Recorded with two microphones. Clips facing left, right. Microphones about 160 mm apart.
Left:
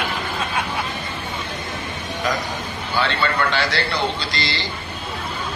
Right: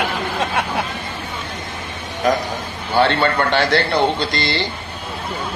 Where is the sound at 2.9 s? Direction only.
55° right (ahead or behind).